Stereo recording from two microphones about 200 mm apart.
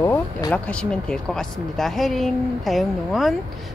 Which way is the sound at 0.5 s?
5° left (ahead or behind).